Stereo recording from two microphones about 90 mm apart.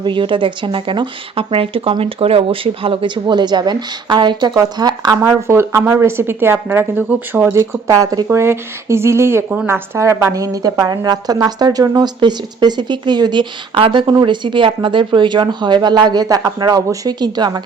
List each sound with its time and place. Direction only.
0.0 s speech: 65° right (ahead or behind)
5.2 s speech: 30° right (ahead or behind)
8.3 s a woman's voice: 30° right (ahead or behind); by 14.0 s 80° right
14.1 s a woman's voice: 55° right (ahead or behind)